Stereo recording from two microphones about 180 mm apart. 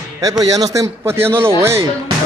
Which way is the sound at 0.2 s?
20° right (ahead or behind).